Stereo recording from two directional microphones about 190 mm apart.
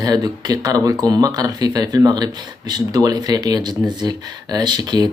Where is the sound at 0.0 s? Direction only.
20° right (ahead or behind).